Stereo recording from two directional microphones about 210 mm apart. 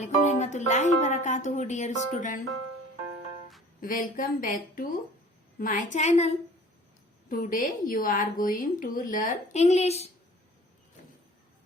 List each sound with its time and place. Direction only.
0.0 s a woman's voice: 35° left (ahead or behind)
3.8 s a woman's voice: 40° left (ahead or behind)